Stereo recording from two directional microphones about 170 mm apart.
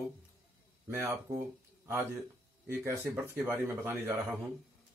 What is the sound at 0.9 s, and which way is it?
Speech, 15° right (ahead or behind).